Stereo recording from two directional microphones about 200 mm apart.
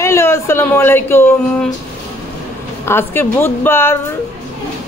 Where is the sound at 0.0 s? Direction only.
15° left (ahead or behind).